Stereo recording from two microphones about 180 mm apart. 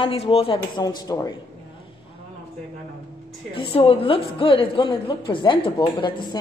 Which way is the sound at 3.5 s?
30° left (ahead or behind).